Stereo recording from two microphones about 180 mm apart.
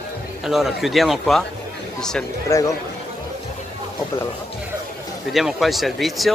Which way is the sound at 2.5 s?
15° left (ahead or behind).